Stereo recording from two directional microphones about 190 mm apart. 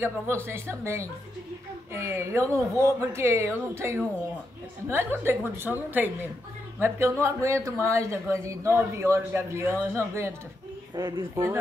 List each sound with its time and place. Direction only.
0.0 s speech: 15° right (ahead or behind)